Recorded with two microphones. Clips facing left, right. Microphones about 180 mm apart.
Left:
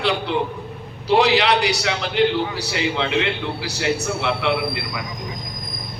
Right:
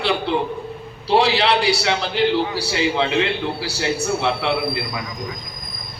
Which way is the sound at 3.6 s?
30° right (ahead or behind).